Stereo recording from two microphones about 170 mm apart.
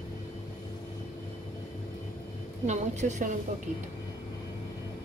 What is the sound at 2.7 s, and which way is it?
Speech, 45° right (ahead or behind).